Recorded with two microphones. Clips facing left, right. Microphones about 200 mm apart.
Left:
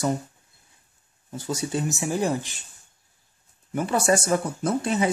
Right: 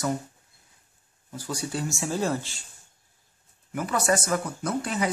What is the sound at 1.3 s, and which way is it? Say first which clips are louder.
Speech: left 4 dB; 20° left (ahead or behind).